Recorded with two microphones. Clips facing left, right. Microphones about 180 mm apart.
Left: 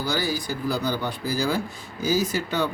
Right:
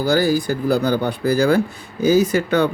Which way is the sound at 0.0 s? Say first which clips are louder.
Right 10 dB; 50° right (ahead or behind).